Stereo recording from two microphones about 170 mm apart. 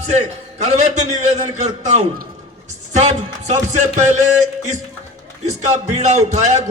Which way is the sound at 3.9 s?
45° right (ahead or behind).